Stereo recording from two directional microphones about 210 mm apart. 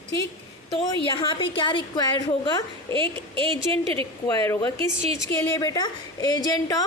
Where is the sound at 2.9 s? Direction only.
25° right (ahead or behind).